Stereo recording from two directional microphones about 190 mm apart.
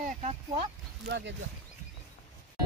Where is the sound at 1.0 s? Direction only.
65° right (ahead or behind).